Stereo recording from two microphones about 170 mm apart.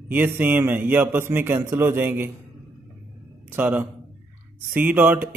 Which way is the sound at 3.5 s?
10° right (ahead or behind).